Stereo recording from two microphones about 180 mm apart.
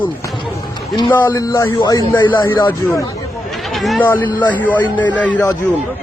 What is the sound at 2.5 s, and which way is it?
Speech, 15° left (ahead or behind).